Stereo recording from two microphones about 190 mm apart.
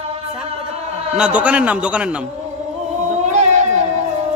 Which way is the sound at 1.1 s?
5° right (ahead or behind).